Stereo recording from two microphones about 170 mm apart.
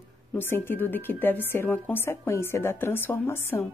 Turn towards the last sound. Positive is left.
turn(degrees=15)  # may be behind; listen again after turning